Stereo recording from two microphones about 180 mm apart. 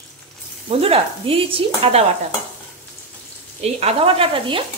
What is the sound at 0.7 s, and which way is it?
Speech, 35° right (ahead or behind).